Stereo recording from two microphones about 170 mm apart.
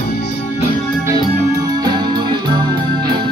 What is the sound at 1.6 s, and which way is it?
Music, 25° right (ahead or behind).